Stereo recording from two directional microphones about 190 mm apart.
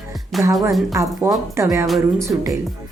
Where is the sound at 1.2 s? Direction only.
15° right (ahead or behind).